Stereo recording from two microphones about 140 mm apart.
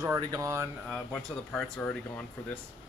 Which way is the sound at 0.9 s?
Centre (ahead or behind).